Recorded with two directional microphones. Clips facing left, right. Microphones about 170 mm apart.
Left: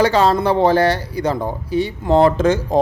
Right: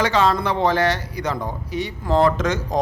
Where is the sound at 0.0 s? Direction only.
35° left (ahead or behind).